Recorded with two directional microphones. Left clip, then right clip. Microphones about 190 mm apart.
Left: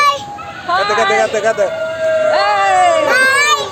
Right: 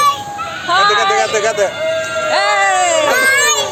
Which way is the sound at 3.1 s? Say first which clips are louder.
Left 1 dB; 10° left (ahead or behind).